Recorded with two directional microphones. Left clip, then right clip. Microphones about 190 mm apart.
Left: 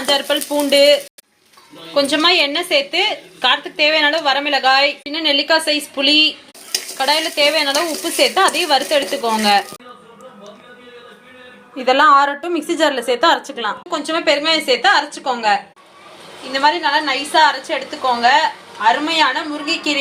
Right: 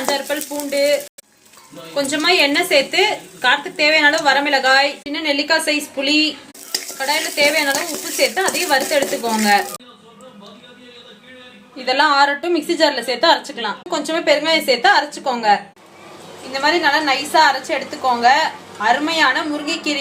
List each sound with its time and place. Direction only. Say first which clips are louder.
0.1 s speech: left 6 dB; 20° left (ahead or behind)
2.0 s a woman's voice: left 2 dB; 20° left (ahead or behind)
11.8 s a woman's voice: left 3 dB; 15° left (ahead or behind)